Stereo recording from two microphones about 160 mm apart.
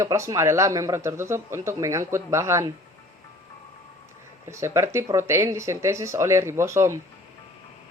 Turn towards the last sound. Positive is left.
turn(degrees=-20)  # may be behind; listen again after turning